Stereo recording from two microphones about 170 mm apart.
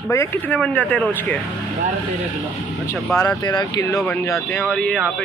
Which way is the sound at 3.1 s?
20° left (ahead or behind).